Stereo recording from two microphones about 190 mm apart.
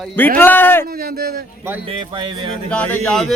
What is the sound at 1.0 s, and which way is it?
Speech, 50° right (ahead or behind).